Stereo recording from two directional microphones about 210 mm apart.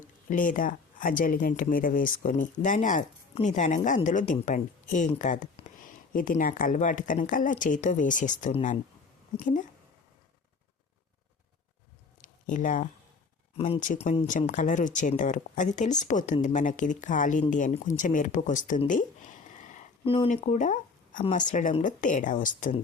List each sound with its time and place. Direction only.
0.3 s speech: 40° left (ahead or behind)
12.2 s a sound: 40° left (ahead or behind)
13.6 s speech: 35° left (ahead or behind)